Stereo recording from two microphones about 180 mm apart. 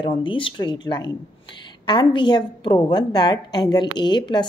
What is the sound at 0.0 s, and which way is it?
A woman's voice, 25° left (ahead or behind).